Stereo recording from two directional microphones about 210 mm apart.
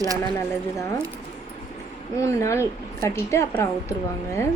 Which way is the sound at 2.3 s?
15° left (ahead or behind).